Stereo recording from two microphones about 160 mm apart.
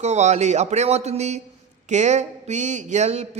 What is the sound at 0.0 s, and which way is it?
Speech, 45° right (ahead or behind).